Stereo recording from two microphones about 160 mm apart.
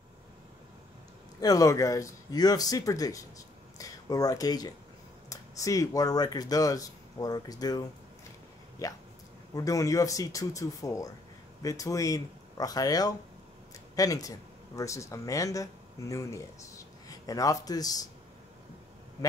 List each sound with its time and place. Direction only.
1.4 s speech: 20° left (ahead or behind)
3.7 s a sound: 20° left (ahead or behind)
5.3 s speech: 20° left (ahead or behind)